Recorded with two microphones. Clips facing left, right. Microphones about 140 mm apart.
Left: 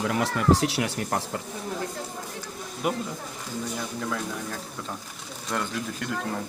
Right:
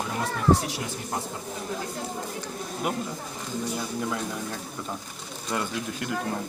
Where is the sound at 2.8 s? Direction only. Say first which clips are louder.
Left 2 dB; centre (ahead or behind).